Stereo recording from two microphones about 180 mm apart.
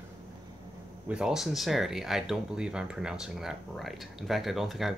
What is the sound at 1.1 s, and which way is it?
Speech, 5° right (ahead or behind).